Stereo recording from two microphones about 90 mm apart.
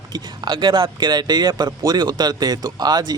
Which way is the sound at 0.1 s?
50° right (ahead or behind).